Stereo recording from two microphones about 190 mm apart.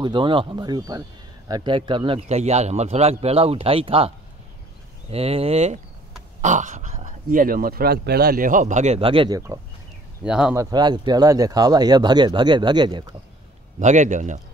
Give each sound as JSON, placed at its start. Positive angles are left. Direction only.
{"t": 0.0, "sound": "a man's voice", "side_deg": -25}
{"t": 5.1, "sound": "a man's voice", "side_deg": -30}
{"t": 10.2, "sound": "speech", "side_deg": -5}
{"t": 10.5, "sound": "speech", "side_deg": -20}
{"t": 13.7, "sound": "a man's voice", "side_deg": -40}